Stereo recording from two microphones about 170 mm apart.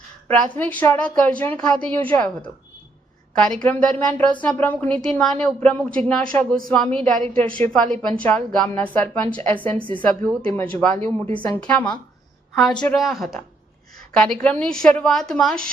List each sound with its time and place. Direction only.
0.5 s a woman's voice: 10° left (ahead or behind)
3.3 s a woman's voice: 5° left (ahead or behind)
6.7 s a woman's voice: 5° left (ahead or behind)